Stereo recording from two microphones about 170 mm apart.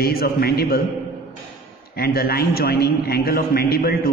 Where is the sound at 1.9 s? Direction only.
65° left (ahead or behind).